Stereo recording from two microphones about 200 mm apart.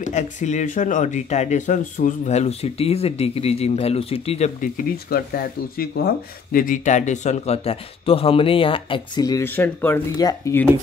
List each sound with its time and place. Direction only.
0.0 s speech: 35° left (ahead or behind); by 10.7 s 15° left (ahead or behind)